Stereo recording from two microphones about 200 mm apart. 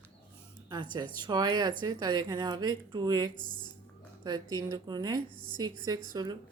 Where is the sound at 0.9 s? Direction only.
20° right (ahead or behind).